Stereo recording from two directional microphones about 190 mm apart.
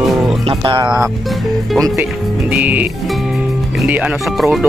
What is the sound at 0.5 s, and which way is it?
Speech, 25° right (ahead or behind).